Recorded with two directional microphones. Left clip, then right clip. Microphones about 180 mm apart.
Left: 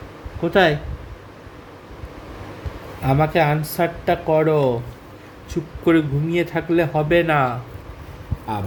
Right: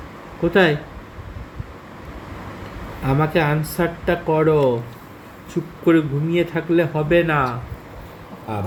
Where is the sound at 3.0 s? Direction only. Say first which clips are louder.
Left 2 dB; 30° left (ahead or behind).